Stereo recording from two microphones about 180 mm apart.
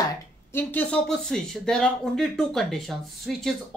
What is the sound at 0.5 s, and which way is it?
Speech, 10° left (ahead or behind).